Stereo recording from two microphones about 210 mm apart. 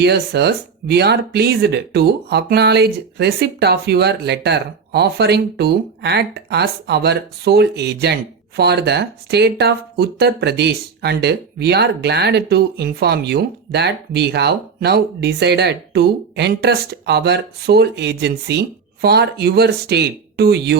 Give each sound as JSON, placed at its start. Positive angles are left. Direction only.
{"t": 0.0, "sound": "speech", "side_deg": -50}